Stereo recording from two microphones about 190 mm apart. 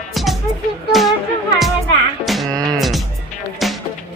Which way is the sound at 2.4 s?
20° right (ahead or behind).